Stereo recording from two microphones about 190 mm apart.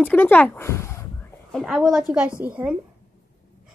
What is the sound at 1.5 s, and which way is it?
A woman's voice, centre (ahead or behind).